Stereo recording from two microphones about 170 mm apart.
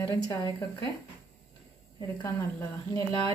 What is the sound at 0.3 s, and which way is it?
Speech, 20° left (ahead or behind).